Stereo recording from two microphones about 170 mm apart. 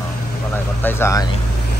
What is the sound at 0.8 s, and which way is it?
Speech, 15° left (ahead or behind).